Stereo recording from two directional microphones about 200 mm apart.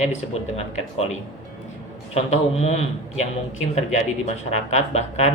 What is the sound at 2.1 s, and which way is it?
Speech, 30° left (ahead or behind).